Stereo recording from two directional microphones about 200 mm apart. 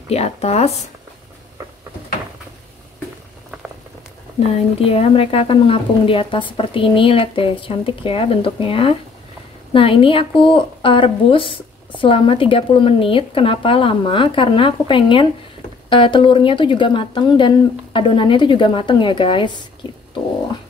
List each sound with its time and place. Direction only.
0.1 s speech: 30° left (ahead or behind)
4.7 s a woman's voice: 30° left (ahead or behind)